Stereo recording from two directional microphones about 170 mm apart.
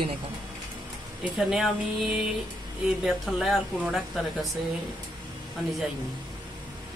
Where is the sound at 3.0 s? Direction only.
Centre (ahead or behind).